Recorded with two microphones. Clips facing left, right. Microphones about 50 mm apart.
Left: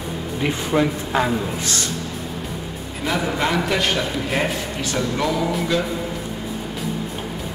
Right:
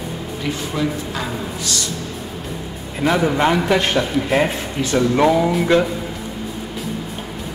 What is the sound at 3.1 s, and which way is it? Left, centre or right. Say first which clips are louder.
Speech: right 5 dB; centre.